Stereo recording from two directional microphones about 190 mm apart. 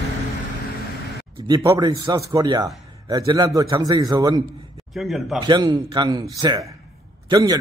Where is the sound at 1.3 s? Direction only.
20° right (ahead or behind).